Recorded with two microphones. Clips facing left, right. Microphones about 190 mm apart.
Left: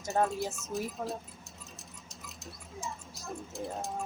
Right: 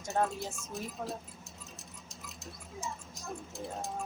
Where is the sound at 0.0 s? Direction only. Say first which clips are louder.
Left 3 dB; centre (ahead or behind).